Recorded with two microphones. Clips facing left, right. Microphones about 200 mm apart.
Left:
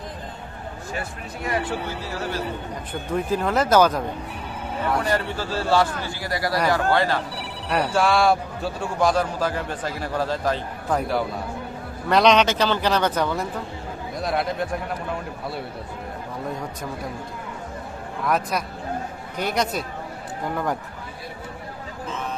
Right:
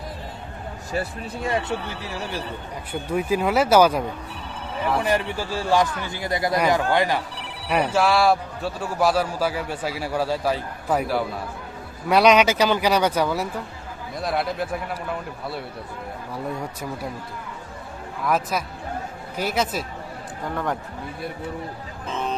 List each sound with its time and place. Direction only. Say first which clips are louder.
0.9 s speech: right 7 dB; 25° right (ahead or behind)
2.9 s a man's voice: right 1 dB; 10° right (ahead or behind)
18.3 s a man's voice: even; 5° right (ahead or behind)